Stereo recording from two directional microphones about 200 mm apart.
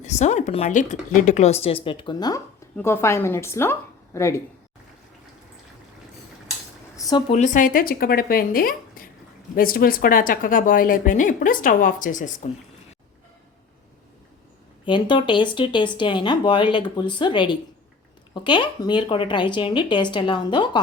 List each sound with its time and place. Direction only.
0.0 s a woman's voice: 35° left (ahead or behind); by 4.4 s 15° left (ahead or behind)
6.9 s a sound: 15° left (ahead or behind)
7.3 s speech: 35° left (ahead or behind)
14.8 s speech: 25° left (ahead or behind)